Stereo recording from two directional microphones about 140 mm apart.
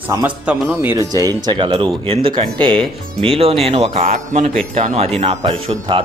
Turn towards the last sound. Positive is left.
turn(degrees=-40)  # may be behind; listen again after turning